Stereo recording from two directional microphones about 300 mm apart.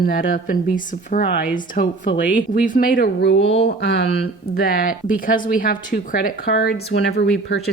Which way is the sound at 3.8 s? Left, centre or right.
Left.